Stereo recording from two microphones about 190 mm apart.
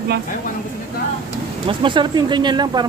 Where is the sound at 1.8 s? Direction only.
25° right (ahead or behind).